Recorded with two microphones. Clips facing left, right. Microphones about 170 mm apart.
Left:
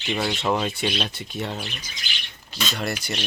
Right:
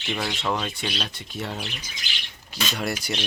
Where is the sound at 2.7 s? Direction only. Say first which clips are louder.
Even; 10° right (ahead or behind).